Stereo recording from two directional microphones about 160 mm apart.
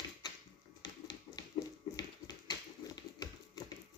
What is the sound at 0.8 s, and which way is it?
Finger snapping, 25° left (ahead or behind).